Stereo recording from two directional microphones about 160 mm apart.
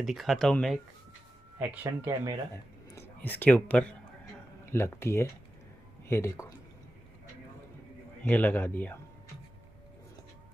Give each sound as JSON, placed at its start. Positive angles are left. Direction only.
{"t": 0.0, "sound": "speech", "side_deg": 0}
{"t": 1.6, "sound": "speech", "side_deg": -15}
{"t": 2.5, "sound": "a man's voice", "side_deg": 15}
{"t": 8.2, "sound": "a man's voice", "side_deg": 10}